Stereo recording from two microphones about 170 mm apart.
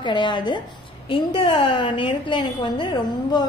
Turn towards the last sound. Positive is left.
turn(degrees=25)  # may be behind; listen again after turning